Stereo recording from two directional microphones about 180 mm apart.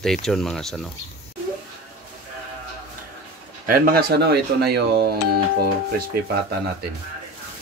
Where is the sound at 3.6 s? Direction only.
55° right (ahead or behind).